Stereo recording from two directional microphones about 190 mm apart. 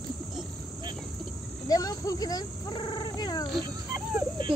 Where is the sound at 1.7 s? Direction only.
20° left (ahead or behind).